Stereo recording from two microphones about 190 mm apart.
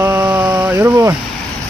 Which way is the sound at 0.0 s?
20° right (ahead or behind).